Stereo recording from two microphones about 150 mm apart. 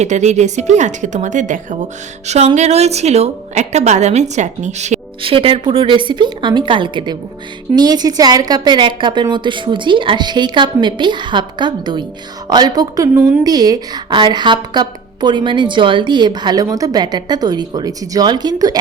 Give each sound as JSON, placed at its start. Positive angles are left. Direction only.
{"t": 0.0, "sound": "a woman's voice", "side_deg": -50}
{"t": 5.2, "sound": "a woman's voice", "side_deg": -35}